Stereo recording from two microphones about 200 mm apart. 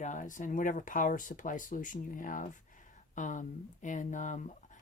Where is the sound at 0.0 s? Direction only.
40° left (ahead or behind).